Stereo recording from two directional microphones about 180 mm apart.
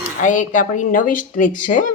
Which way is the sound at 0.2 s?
45° left (ahead or behind).